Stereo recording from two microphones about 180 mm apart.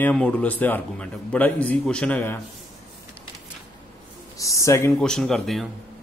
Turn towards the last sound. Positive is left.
turn(degrees=0)  # may be behind; listen again after turning